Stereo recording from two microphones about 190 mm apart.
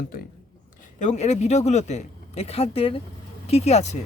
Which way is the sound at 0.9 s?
40° left (ahead or behind).